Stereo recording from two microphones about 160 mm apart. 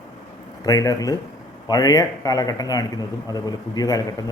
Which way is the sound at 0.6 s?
20° left (ahead or behind).